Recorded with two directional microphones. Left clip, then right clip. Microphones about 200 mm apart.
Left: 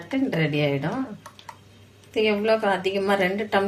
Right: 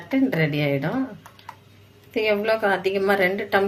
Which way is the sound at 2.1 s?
20° right (ahead or behind).